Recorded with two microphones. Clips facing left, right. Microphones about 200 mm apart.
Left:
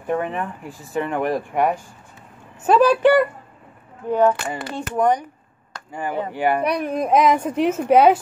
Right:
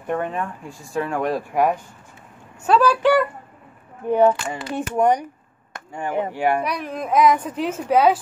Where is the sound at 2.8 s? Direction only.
20° left (ahead or behind).